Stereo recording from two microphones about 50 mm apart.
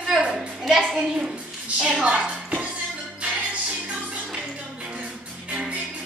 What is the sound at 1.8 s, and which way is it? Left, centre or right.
Speech, centre.